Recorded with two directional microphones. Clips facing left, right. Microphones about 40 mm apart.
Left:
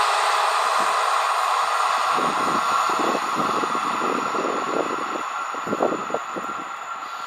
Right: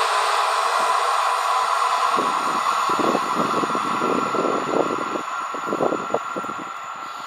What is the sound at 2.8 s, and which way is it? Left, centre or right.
Vehicle, centre.